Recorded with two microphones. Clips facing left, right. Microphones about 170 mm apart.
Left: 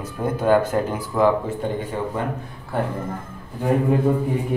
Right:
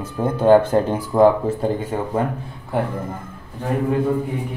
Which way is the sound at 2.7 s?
15° right (ahead or behind).